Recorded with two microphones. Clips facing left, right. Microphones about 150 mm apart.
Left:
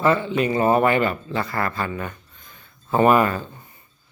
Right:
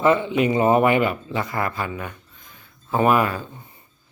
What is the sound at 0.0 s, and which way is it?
Speech, 20° right (ahead or behind).